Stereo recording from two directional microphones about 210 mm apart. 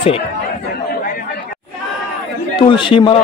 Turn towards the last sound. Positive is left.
turn(degrees=25)  # may be behind; listen again after turning